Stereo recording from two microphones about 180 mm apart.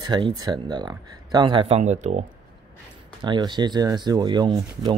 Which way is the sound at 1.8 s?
40° right (ahead or behind).